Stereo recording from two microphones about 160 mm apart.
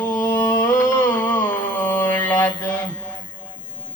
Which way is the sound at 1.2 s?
10° left (ahead or behind).